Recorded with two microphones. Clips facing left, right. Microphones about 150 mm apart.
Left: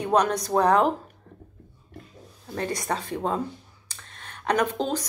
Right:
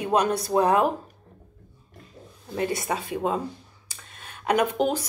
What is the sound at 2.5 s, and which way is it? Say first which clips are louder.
Speech: right 2 dB; 10° right (ahead or behind).